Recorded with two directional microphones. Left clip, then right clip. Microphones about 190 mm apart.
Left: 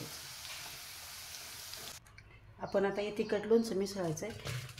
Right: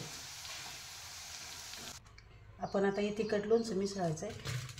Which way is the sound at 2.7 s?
40° left (ahead or behind).